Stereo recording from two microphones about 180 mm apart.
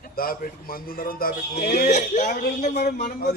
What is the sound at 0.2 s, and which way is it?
A man's voice, 55° left (ahead or behind).